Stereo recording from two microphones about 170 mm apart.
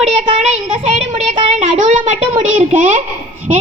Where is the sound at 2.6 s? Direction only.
40° right (ahead or behind).